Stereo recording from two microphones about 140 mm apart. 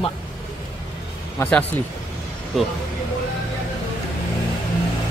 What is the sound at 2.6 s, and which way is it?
Speech, centre (ahead or behind).